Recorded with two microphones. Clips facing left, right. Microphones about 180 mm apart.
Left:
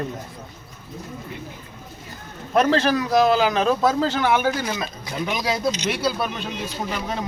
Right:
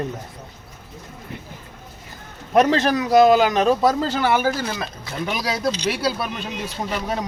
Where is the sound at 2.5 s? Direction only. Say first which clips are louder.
Right 1 dB; 15° right (ahead or behind).